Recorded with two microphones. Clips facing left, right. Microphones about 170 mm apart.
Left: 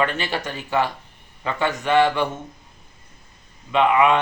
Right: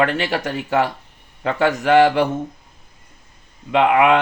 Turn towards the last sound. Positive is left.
turn(degrees=-90)